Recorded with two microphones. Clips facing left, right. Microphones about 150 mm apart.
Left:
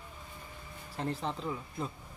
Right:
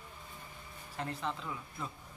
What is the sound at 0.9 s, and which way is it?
Speech, 35° left (ahead or behind).